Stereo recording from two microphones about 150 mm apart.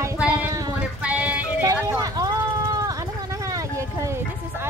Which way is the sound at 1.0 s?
10° right (ahead or behind).